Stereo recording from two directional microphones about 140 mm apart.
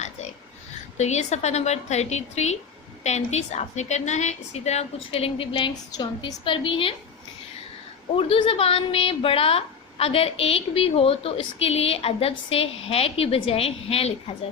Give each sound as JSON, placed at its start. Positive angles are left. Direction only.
{"t": 0.9, "sound": "a woman's voice", "side_deg": 55}
{"t": 8.2, "sound": "a woman's voice", "side_deg": 40}